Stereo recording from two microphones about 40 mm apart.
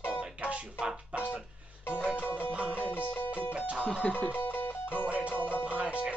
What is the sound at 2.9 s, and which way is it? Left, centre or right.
Music, left.